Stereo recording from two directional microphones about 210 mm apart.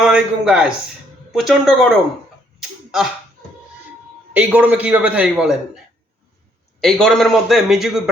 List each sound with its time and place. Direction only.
0.0 s a man's voice: 5° right (ahead or behind)
4.4 s a man's voice: 5° right (ahead or behind)
6.8 s a man's voice: centre (ahead or behind)